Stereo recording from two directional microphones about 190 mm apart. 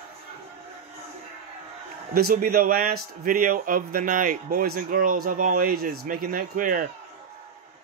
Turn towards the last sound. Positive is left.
turn(degrees=-45)  # may be behind; listen again after turning